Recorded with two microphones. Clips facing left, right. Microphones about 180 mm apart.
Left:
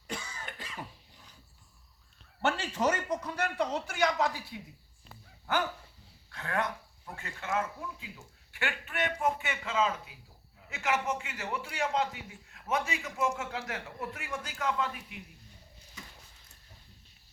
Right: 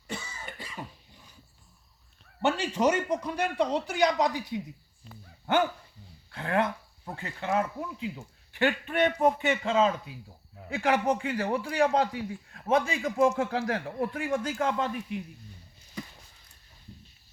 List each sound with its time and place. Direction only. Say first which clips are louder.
0.1 s cough: right 2 dB; 5° right (ahead or behind)
2.4 s speech: right 4 dB; 15° right (ahead or behind)
6.3 s speech: right 6 dB; 25° right (ahead or behind)
9.0 s a man's voice: right 7 dB; 40° right (ahead or behind)